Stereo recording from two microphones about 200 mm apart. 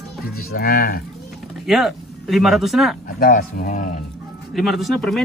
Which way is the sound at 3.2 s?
45° left (ahead or behind).